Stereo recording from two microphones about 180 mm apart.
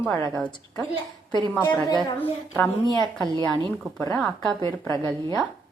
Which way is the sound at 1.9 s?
10° left (ahead or behind).